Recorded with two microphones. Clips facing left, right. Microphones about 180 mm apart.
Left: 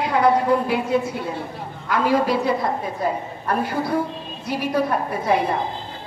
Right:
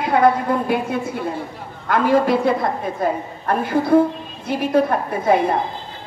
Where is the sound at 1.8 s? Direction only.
50° right (ahead or behind).